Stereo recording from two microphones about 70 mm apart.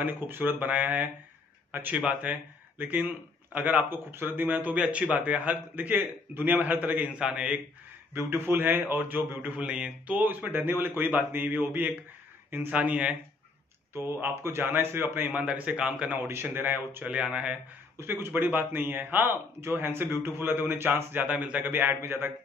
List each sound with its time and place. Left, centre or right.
0.0 s a man's voice: right
7.1 s speech: centre
8.1 s a man's voice: right
9.7 s a man's voice: centre; by 12.7 s right
12.7 s a man's voice: centre
13.9 s a man's voice: right
15.4 s a man's voice: centre
17.0 s speech: centre
17.9 s a man's voice: right